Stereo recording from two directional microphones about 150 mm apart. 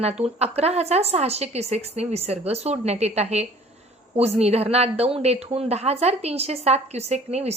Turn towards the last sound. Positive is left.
turn(degrees=-45)  # may be behind; listen again after turning